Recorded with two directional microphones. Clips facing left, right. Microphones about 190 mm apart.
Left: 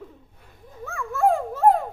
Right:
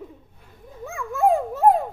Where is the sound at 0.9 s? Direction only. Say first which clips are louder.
Right 1 dB; 15° right (ahead or behind).